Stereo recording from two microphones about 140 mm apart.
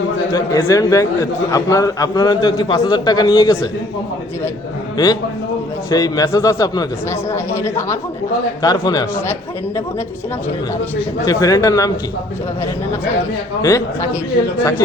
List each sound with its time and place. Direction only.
0.3 s a man's voice: 25° left (ahead or behind)
5.9 s a man's voice: 25° left (ahead or behind)
11.3 s a man's voice: 25° left (ahead or behind)
13.6 s a man's voice: 25° left (ahead or behind)